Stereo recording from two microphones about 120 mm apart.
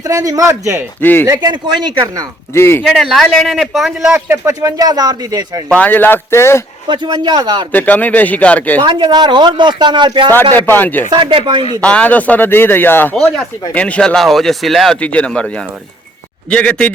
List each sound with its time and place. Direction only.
0.1 s speech: 30° right (ahead or behind)
1.0 s speech: 15° left (ahead or behind)
1.3 s speech: 35° right (ahead or behind)
2.6 s speech: 20° left (ahead or behind)
2.8 s speech: centre (ahead or behind)
4.3 s speech: 25° right (ahead or behind)
5.6 s speech: 10° left (ahead or behind)
6.8 s speech: 40° right (ahead or behind)
7.7 s speech: 15° left (ahead or behind)
8.8 s speech: 40° right (ahead or behind)
10.5 s speech: 15° left (ahead or behind)
11.1 s speech: 45° right (ahead or behind)
11.8 s speech: 10° left (ahead or behind)
13.1 s speech: 5° left (ahead or behind)